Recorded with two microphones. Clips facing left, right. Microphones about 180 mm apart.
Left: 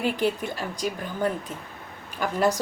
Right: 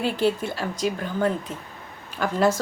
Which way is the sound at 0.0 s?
15° left (ahead or behind).